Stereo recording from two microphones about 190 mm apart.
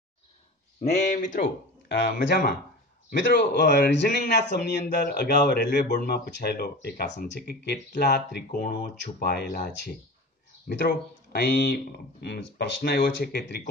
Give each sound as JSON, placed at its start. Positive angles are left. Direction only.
{"t": 0.7, "sound": "speech", "side_deg": 35}
{"t": 1.9, "sound": "speech", "side_deg": 55}
{"t": 9.0, "sound": "speech", "side_deg": 60}